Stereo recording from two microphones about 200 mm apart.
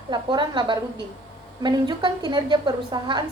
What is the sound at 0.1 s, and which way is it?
A woman's voice, 20° right (ahead or behind).